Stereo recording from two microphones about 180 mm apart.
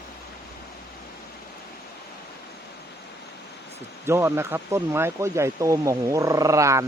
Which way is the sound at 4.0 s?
15° right (ahead or behind).